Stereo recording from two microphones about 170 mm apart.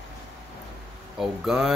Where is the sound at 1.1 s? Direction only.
Centre (ahead or behind).